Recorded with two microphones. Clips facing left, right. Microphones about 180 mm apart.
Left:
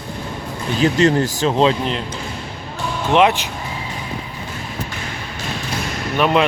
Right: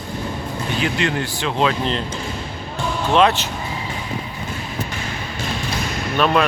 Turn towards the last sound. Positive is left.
turn(degrees=15)  # may be behind; listen again after turning